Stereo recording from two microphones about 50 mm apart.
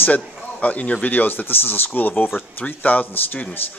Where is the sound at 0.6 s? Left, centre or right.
Left.